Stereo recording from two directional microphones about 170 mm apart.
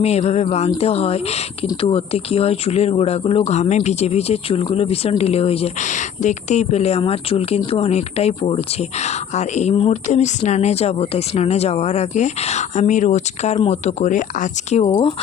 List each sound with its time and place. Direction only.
0.0 s speech: 40° left (ahead or behind)